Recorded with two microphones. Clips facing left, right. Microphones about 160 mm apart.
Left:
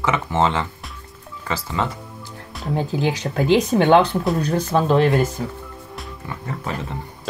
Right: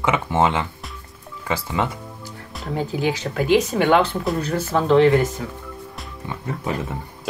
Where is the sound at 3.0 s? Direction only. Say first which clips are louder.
Left 1 dB; 20° left (ahead or behind).